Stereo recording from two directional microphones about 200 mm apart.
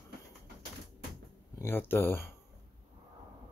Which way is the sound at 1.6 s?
10° left (ahead or behind).